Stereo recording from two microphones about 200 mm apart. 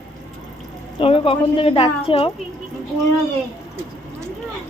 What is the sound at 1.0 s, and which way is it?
A woman's voice, 25° left (ahead or behind).